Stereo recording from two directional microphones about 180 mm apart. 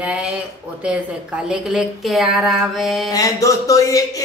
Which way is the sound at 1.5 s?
5° right (ahead or behind).